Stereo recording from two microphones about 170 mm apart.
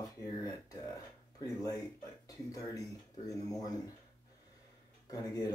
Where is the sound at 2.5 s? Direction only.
20° left (ahead or behind).